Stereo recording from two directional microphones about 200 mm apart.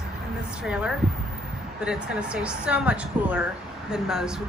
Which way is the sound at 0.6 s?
5° right (ahead or behind).